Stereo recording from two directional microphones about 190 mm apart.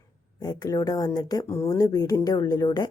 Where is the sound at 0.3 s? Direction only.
20° left (ahead or behind).